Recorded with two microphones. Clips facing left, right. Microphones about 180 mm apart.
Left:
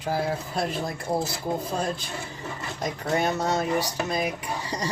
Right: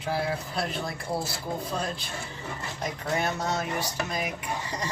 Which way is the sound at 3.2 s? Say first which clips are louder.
Left 5 dB; 35° left (ahead or behind).